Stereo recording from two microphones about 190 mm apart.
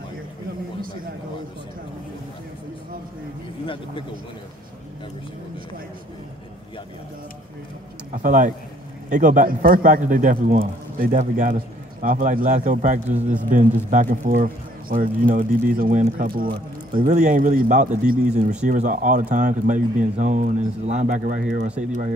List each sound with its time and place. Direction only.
3.6 s speech: 25° left (ahead or behind)
8.1 s a man's voice: 45° right (ahead or behind)